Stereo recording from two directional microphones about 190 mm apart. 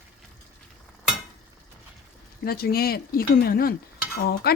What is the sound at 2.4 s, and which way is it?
Speech, 55° left (ahead or behind).